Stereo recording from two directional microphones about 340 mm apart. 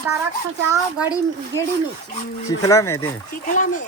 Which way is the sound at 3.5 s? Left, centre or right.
Left.